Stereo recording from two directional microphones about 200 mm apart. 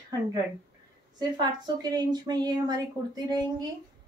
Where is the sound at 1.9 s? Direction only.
20° right (ahead or behind).